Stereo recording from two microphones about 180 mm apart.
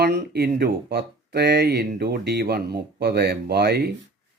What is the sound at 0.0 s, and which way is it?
A man's voice, 60° right (ahead or behind).